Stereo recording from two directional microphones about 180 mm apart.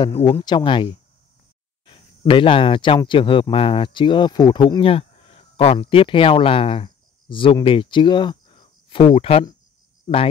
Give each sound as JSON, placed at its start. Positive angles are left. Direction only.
{"t": 0.0, "sound": "speech", "side_deg": 25}